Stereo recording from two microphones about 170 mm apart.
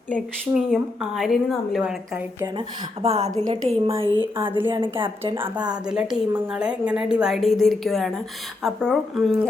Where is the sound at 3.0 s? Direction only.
35° right (ahead or behind).